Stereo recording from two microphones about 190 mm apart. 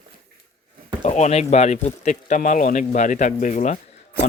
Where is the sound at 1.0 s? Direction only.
35° left (ahead or behind).